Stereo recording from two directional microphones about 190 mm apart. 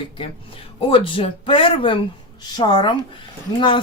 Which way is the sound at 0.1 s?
30° left (ahead or behind).